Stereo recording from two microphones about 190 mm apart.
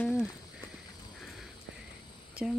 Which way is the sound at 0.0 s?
5° left (ahead or behind).